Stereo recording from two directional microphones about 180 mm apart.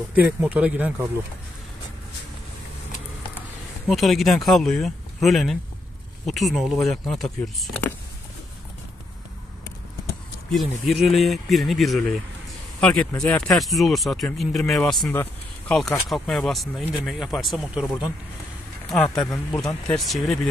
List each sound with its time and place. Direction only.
0.1 s speech: 10° right (ahead or behind)
3.9 s speech: centre (ahead or behind)
10.5 s speech: centre (ahead or behind)
19.0 s speech: 20° left (ahead or behind)
19.5 s speech: 5° left (ahead or behind)